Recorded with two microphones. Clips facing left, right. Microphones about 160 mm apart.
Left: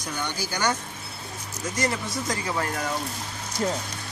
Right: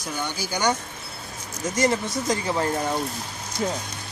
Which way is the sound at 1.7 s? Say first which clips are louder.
Right 5 dB; 25° right (ahead or behind).